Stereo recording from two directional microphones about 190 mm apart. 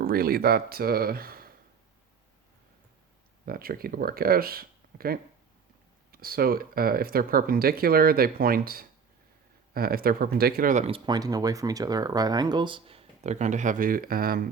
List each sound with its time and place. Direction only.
0.0 s speech: 50° right (ahead or behind)
3.4 s speech: 50° right (ahead or behind)